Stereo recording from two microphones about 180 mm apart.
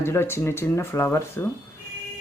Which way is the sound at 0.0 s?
15° left (ahead or behind).